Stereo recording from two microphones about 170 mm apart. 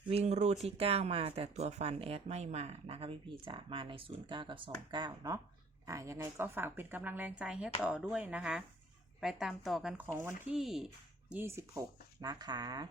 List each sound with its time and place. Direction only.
0.1 s a woman's voice: 35° right (ahead or behind); by 10.2 s centre (ahead or behind)
10.2 s a woman's voice: 15° right (ahead or behind)
10.6 s speech: centre (ahead or behind); by 12.9 s 25° right (ahead or behind)